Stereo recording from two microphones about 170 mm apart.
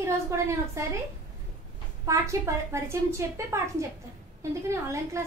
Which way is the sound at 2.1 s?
15° right (ahead or behind).